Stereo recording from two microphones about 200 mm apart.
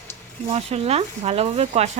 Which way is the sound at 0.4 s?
30° right (ahead or behind).